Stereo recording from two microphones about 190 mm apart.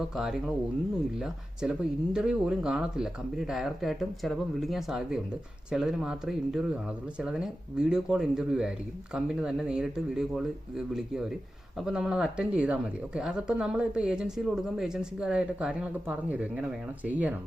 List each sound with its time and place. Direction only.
0.2 s a woman's voice: centre (ahead or behind)
2.1 s a woman's voice: 5° right (ahead or behind)